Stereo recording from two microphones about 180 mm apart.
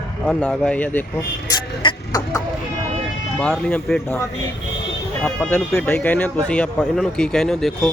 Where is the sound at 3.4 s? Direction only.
5° left (ahead or behind).